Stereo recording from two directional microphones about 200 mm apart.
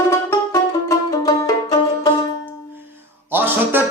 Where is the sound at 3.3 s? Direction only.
10° right (ahead or behind).